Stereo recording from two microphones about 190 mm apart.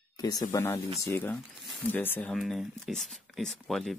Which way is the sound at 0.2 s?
20° left (ahead or behind).